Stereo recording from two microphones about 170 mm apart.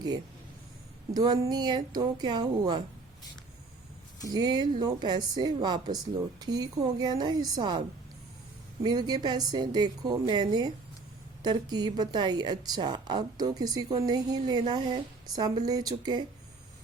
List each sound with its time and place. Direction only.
1.1 s a woman's voice: 25° right (ahead or behind)
4.3 s a woman's voice: 25° right (ahead or behind)
8.8 s a woman's voice: 25° right (ahead or behind)